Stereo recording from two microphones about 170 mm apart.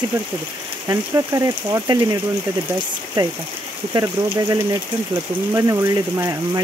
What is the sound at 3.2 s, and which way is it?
Speech, 25° right (ahead or behind).